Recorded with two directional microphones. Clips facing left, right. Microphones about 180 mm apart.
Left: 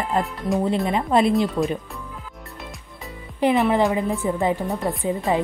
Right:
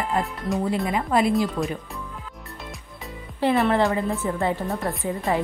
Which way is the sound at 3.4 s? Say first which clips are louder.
Left 2 dB; 15° left (ahead or behind).